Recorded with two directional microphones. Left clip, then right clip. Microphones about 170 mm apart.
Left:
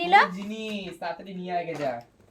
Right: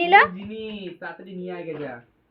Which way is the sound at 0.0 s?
15° right (ahead or behind).